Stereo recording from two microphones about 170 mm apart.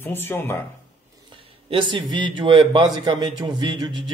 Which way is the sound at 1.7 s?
30° right (ahead or behind).